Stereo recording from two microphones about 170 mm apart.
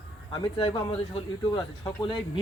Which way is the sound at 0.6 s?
25° left (ahead or behind).